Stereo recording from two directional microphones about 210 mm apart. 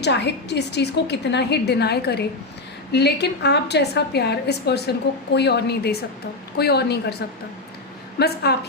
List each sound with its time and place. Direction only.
0.0 s a woman's voice: 55° left (ahead or behind)